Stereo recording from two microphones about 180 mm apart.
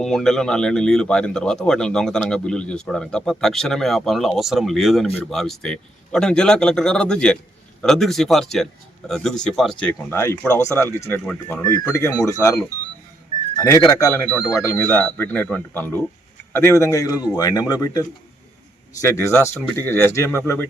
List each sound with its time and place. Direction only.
0.0 s speech: 5° left (ahead or behind)
10.1 s speech: 15° left (ahead or behind)
13.6 s speech: 15° left (ahead or behind)
19.0 s speech: 15° left (ahead or behind)